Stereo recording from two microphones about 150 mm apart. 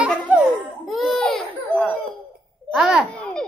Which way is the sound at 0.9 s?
Centre (ahead or behind).